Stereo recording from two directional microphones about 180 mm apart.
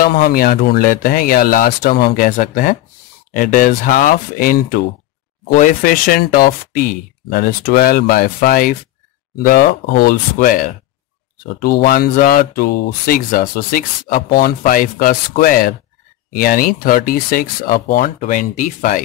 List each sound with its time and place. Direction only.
0.0 s speech: 55° left (ahead or behind)